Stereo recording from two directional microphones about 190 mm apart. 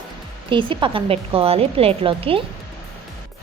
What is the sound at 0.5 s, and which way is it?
A woman's voice, 25° right (ahead or behind).